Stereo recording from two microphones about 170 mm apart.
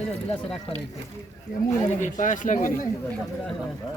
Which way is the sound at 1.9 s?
45° left (ahead or behind).